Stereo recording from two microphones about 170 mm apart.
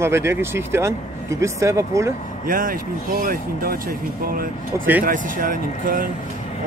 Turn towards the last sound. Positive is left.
turn(degrees=-55)  # may be behind; listen again after turning